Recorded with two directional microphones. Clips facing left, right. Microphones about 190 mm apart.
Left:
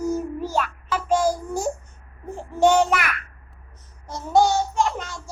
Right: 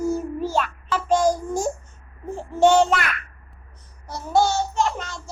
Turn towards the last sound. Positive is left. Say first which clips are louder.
# even
turn(degrees=10)  # may be behind; listen again after turning